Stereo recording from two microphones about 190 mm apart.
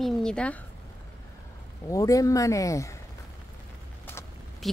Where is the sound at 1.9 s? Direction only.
15° left (ahead or behind).